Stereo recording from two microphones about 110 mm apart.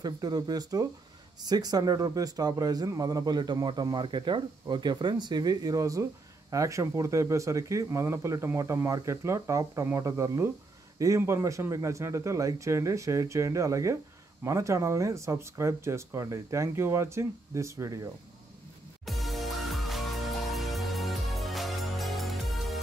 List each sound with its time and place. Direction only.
0.0 s speech: 35° right (ahead or behind)
19.0 s music: centre (ahead or behind)